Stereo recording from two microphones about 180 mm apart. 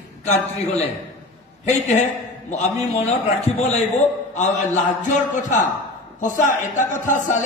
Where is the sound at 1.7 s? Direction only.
40° left (ahead or behind).